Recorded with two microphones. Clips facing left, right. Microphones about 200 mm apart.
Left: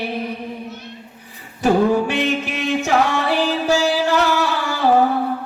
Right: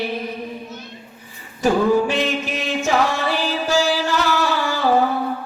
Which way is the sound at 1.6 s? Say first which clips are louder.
Left 1 dB; 65° left (ahead or behind).